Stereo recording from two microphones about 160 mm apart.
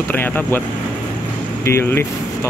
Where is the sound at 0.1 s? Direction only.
10° left (ahead or behind).